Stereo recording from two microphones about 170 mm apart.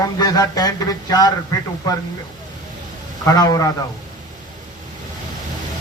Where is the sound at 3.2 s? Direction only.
25° left (ahead or behind).